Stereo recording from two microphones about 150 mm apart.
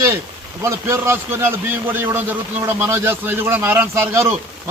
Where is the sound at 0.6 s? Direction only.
20° right (ahead or behind).